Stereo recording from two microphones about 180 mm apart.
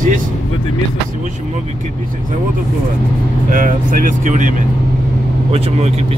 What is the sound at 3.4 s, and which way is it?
Speech, 50° right (ahead or behind).